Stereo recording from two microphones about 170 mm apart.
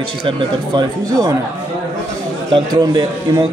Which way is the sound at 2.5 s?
25° right (ahead or behind).